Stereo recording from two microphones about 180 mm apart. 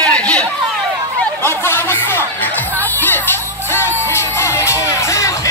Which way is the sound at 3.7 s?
15° left (ahead or behind).